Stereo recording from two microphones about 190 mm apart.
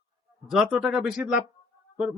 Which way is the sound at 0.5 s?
Centre (ahead or behind).